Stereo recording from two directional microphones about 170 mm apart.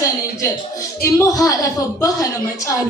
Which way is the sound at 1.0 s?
20° left (ahead or behind).